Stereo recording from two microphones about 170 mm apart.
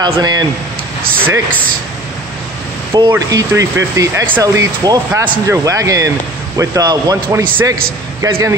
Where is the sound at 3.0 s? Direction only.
20° right (ahead or behind).